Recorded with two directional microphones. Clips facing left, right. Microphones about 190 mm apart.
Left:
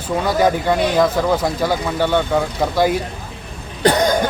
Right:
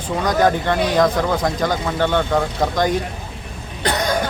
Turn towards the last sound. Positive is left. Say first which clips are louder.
# left 5 dB
turn(degrees=35)  # may be behind; listen again after turning